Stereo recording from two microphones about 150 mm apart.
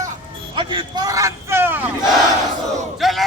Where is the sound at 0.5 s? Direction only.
35° right (ahead or behind); by 1.9 s 15° right (ahead or behind).